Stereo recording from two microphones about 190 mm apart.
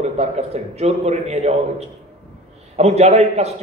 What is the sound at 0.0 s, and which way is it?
A man's voice, 35° right (ahead or behind).